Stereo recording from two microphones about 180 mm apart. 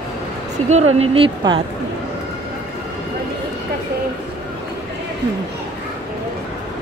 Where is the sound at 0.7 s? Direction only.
40° right (ahead or behind).